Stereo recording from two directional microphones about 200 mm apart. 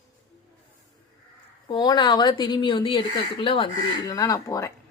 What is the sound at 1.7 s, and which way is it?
A woman's voice, 20° left (ahead or behind).